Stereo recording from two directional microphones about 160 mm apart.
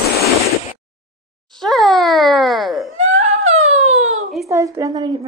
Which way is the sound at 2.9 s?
45° right (ahead or behind).